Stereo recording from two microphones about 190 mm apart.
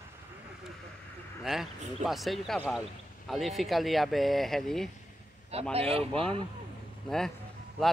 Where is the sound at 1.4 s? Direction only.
Centre (ahead or behind).